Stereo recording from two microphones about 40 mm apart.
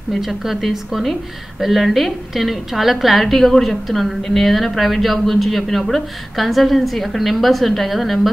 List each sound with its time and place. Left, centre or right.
0.1 s a woman's voice: centre